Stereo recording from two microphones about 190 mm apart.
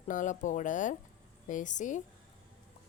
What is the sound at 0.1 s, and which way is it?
A woman's voice, 40° left (ahead or behind).